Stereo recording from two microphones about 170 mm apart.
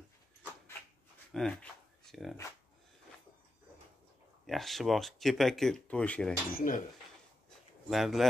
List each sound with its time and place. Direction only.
1.3 s a sound: 5° left (ahead or behind)
4.5 s speech: centre (ahead or behind)
6.5 s speech: 50° left (ahead or behind)
7.9 s speech: centre (ahead or behind)